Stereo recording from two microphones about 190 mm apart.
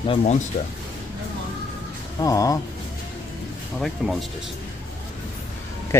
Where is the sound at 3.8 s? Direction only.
Centre (ahead or behind).